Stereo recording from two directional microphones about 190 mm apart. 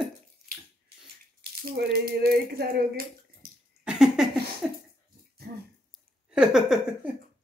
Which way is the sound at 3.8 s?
5° right (ahead or behind).